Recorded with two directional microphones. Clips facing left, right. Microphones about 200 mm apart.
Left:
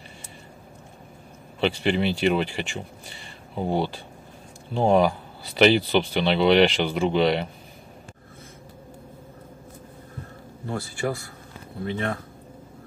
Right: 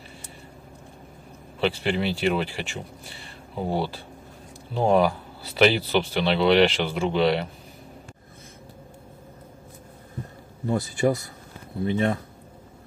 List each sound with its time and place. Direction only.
1.6 s speech: centre (ahead or behind)
10.7 s speech: 20° right (ahead or behind)